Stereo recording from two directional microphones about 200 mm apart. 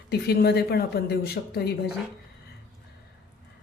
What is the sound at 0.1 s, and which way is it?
Speech, 55° left (ahead or behind).